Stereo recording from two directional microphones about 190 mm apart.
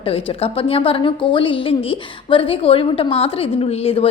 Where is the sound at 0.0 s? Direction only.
30° left (ahead or behind).